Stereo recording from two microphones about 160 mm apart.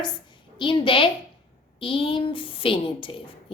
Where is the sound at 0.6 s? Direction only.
30° left (ahead or behind).